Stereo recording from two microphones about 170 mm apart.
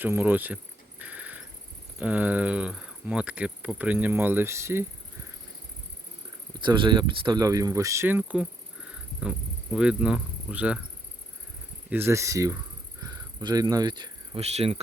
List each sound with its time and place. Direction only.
0.0 s cricket: 10° right (ahead or behind)
2.0 s speech: 10° right (ahead or behind)
6.6 s speech: 30° right (ahead or behind); by 8.4 s 10° right (ahead or behind)
9.7 s speech: 5° right (ahead or behind)
11.9 s speech: 15° right (ahead or behind)
13.0 s cricket: 20° right (ahead or behind)
14.4 s speech: 40° right (ahead or behind)